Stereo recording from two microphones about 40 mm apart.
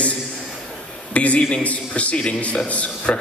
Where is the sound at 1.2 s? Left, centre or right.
Left.